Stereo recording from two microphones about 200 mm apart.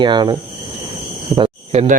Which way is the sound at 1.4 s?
25° right (ahead or behind).